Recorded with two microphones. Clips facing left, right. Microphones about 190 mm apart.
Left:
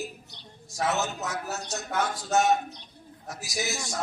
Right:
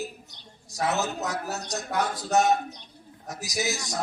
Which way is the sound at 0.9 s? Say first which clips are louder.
Right 2 dB; 35° right (ahead or behind).